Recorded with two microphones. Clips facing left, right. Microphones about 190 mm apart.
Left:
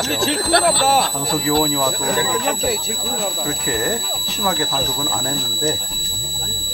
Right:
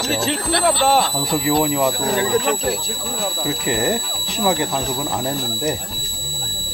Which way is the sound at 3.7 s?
20° right (ahead or behind).